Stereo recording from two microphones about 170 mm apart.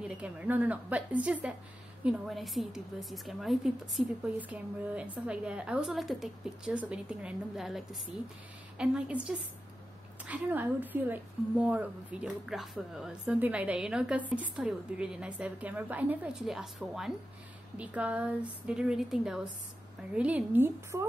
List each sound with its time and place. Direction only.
0.0 s a woman's voice: 5° right (ahead or behind)